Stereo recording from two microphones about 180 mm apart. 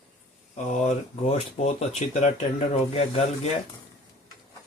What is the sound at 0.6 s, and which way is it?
Speech, 40° left (ahead or behind).